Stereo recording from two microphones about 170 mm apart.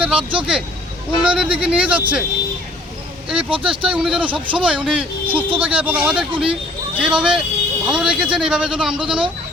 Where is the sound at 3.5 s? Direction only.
30° right (ahead or behind).